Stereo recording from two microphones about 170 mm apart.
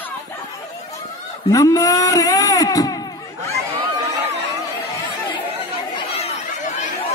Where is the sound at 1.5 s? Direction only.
20° left (ahead or behind).